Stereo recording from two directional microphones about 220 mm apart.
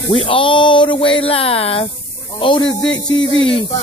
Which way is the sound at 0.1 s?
25° left (ahead or behind).